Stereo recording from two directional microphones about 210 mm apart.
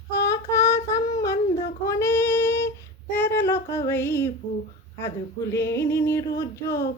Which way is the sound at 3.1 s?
10° left (ahead or behind).